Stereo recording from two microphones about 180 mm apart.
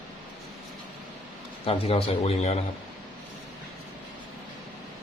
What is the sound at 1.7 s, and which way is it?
Speech, 30° left (ahead or behind).